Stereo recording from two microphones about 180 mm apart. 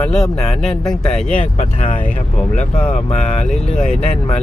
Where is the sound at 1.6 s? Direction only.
40° left (ahead or behind).